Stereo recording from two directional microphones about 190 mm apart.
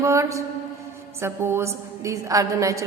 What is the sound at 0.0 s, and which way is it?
A woman's voice, 15° right (ahead or behind).